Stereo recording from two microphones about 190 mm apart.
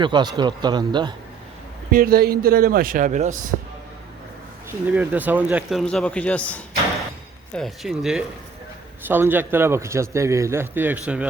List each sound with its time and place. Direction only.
0.0 s a man's voice: 25° right (ahead or behind)
1.9 s speech: 50° right (ahead or behind)
4.9 s a man's voice: 10° right (ahead or behind)
5.8 s a man's voice: 5° left (ahead or behind)